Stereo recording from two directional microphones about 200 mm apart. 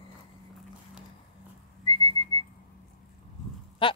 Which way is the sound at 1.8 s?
20° left (ahead or behind).